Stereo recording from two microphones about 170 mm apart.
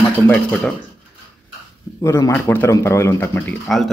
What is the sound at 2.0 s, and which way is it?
Speech, 15° left (ahead or behind).